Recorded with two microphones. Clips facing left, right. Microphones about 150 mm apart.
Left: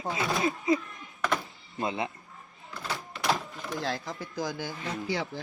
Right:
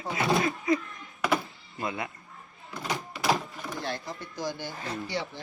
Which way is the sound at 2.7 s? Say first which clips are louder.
Right 3 dB; 15° right (ahead or behind).